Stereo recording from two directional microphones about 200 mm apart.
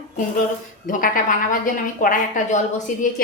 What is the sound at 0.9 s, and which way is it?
Speech, 40° left (ahead or behind).